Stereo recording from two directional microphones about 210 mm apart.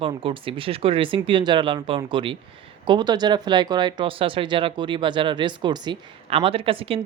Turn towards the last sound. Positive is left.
turn(degrees=-25)  # may be behind; listen again after turning